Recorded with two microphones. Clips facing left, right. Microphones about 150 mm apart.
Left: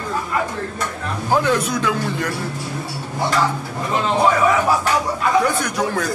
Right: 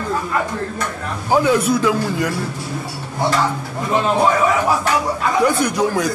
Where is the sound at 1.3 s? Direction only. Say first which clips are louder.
Right 3 dB; 10° right (ahead or behind).